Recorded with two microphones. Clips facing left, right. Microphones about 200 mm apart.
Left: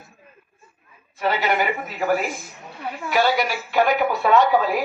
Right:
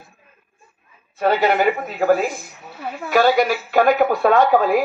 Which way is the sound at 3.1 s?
50° right (ahead or behind).